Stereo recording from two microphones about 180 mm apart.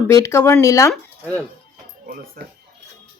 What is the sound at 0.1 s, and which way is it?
Speech, 15° left (ahead or behind).